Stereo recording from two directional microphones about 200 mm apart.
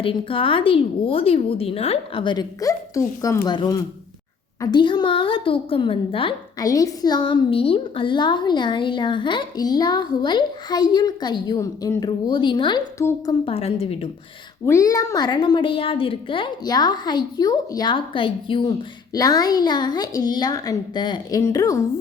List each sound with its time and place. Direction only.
0.0 s a woman's voice: 25° left (ahead or behind)
13.4 s a woman's voice: 30° left (ahead or behind)
14.7 s a woman's voice: 15° left (ahead or behind)